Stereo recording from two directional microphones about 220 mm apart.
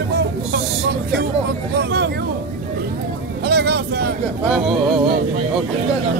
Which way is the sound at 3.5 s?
50° right (ahead or behind).